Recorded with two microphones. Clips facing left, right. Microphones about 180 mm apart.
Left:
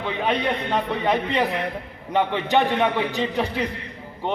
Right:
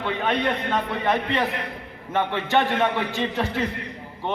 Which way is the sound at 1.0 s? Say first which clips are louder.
Left 1 dB; 15° left (ahead or behind).